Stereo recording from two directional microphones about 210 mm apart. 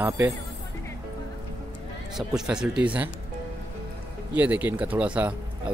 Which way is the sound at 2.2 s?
5° right (ahead or behind).